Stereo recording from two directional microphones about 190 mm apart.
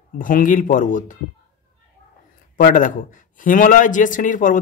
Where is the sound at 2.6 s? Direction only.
45° left (ahead or behind).